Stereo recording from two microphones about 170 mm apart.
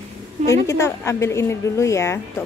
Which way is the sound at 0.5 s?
20° left (ahead or behind).